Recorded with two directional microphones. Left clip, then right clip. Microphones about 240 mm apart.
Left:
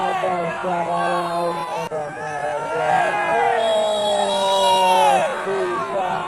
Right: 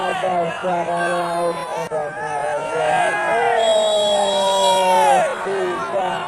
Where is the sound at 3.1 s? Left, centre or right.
Right.